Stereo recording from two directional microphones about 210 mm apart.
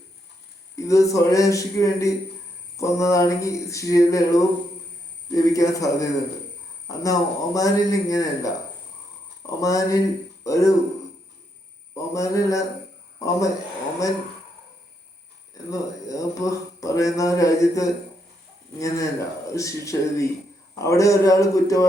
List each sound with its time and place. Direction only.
0.9 s a man's voice: 15° left (ahead or behind)
11.9 s a man's voice: 15° left (ahead or behind)
15.7 s a man's voice: 15° left (ahead or behind)